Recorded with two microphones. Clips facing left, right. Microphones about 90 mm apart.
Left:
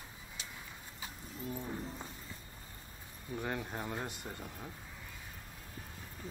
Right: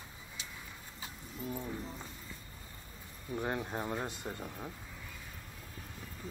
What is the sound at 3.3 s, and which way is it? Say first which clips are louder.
Speech: right 3 dB; 20° right (ahead or behind).